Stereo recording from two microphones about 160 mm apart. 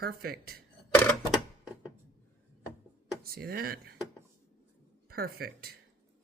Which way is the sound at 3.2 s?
70° right (ahead or behind).